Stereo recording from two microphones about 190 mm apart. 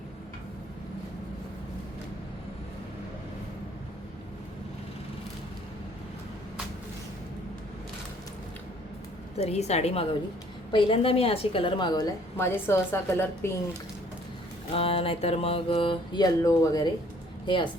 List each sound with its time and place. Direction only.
9.4 s a woman's voice: 35° left (ahead or behind); by 13.5 s 15° left (ahead or behind)
14.7 s a woman's voice: 30° left (ahead or behind)